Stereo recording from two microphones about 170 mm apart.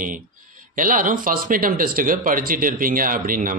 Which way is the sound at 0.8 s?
50° right (ahead or behind).